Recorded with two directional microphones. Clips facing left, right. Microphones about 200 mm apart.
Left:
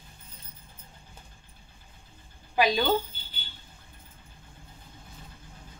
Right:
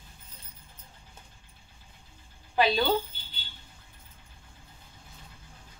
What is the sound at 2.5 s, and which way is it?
Speech, 15° left (ahead or behind).